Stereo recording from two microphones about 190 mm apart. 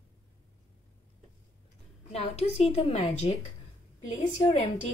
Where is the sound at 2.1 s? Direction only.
35° left (ahead or behind).